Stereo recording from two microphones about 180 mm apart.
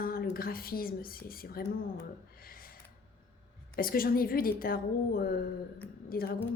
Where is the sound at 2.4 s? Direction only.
55° left (ahead or behind).